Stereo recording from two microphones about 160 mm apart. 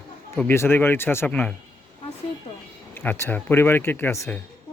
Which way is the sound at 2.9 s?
15° left (ahead or behind).